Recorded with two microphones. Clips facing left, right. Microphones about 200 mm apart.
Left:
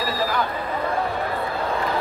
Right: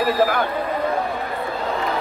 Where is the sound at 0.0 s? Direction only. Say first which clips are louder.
Right 5 dB; 60° right (ahead or behind).